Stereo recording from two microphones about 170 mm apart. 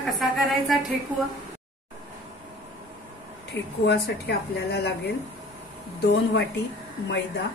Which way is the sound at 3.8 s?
75° left (ahead or behind).